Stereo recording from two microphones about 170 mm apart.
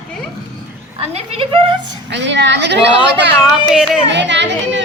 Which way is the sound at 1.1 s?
35° right (ahead or behind).